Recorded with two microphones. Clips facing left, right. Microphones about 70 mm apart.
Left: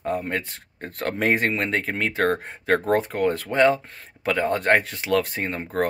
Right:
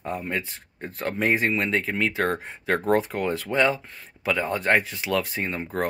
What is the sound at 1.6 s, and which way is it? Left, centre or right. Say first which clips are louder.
Speech: even; left.